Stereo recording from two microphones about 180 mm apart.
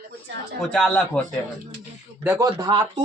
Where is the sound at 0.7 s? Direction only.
5° left (ahead or behind).